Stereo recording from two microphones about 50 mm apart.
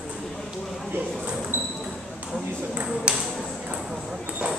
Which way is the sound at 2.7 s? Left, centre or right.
Right.